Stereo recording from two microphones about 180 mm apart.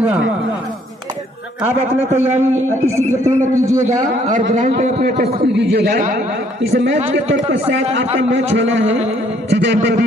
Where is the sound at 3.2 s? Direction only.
15° right (ahead or behind).